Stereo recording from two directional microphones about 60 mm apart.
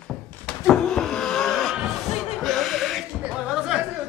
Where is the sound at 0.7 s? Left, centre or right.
Centre.